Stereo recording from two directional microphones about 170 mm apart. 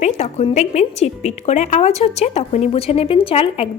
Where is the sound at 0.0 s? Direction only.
40° left (ahead or behind).